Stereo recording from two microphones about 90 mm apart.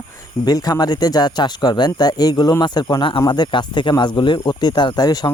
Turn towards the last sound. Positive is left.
turn(degrees=50)  # may be behind; listen again after turning